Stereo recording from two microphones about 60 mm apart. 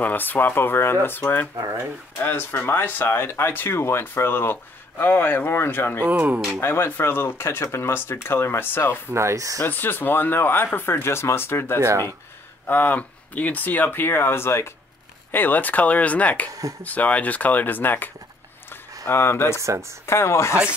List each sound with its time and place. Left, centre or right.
0.0 s speech: left
6.0 s speech: right
6.6 s speech: left
9.1 s speech: right
9.6 s speech: left
11.8 s speech: right
12.6 s speech: left
15.3 s speech: left
19.0 s speech: left
19.6 s speech: right
20.1 s speech: left